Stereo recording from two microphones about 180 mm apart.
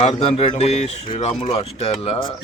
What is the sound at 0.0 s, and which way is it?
Speech, 35° left (ahead or behind).